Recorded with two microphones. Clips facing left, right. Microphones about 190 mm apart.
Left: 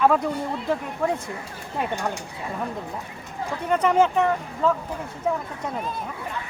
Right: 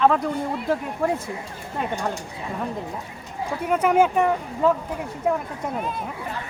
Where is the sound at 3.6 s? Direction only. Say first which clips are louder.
Right 1 dB; 10° right (ahead or behind).